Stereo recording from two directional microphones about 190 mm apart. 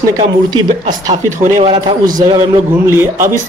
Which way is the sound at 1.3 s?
40° right (ahead or behind).